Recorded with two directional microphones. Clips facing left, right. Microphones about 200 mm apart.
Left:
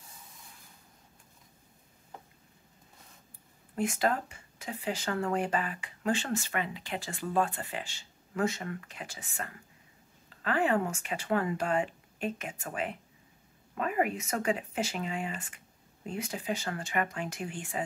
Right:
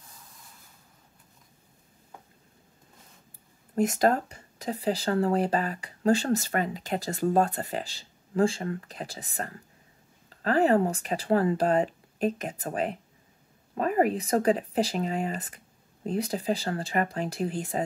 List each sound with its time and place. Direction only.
3.7 s speech: 40° right (ahead or behind)